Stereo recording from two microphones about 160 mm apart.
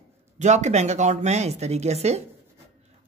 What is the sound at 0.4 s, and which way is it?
Speech, 45° right (ahead or behind).